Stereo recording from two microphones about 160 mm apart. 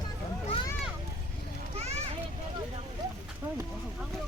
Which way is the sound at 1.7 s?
40° right (ahead or behind).